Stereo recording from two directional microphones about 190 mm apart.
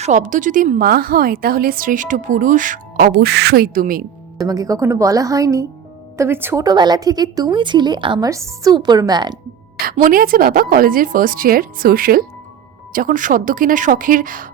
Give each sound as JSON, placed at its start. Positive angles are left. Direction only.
{"t": 0.0, "sound": "a woman's voice", "side_deg": -40}
{"t": 4.4, "sound": "a woman's voice", "side_deg": -20}
{"t": 9.9, "sound": "a woman's voice", "side_deg": -45}